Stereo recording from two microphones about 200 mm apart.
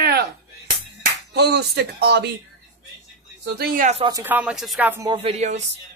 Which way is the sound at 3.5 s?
45° right (ahead or behind).